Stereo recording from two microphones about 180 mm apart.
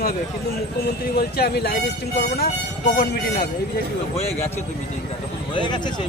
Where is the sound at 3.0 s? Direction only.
60° left (ahead or behind).